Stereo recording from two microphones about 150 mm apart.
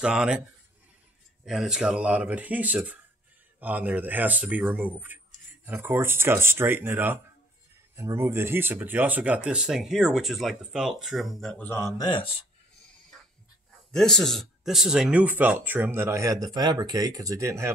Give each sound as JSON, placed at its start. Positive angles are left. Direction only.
{"t": 0.0, "sound": "speech", "side_deg": -5}
{"t": 1.4, "sound": "speech", "side_deg": 0}
{"t": 13.9, "sound": "speech", "side_deg": 5}